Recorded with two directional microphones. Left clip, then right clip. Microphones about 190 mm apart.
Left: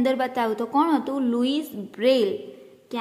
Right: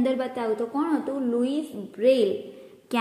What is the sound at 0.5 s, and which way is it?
A woman's voice, 30° left (ahead or behind).